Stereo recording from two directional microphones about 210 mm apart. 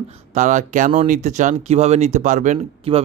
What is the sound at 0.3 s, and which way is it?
A man's voice, 35° right (ahead or behind).